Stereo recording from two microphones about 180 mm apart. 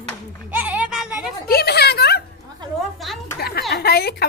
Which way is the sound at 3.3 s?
60° left (ahead or behind).